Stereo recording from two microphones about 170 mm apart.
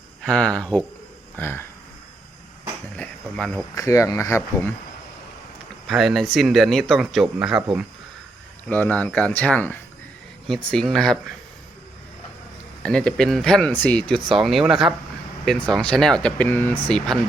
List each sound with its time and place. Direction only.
0.2 s speech: 5° left (ahead or behind)
2.9 s cricket: 5° left (ahead or behind)
3.8 s speech: 20° left (ahead or behind)
5.9 s speech: centre (ahead or behind)
8.6 s speech: 10° left (ahead or behind)
12.8 s speech: 5° left (ahead or behind)